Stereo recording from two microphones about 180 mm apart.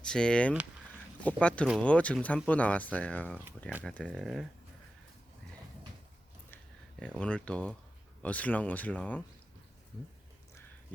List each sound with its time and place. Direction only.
0.0 s speech: 5° left (ahead or behind)
7.0 s speech: 5° left (ahead or behind)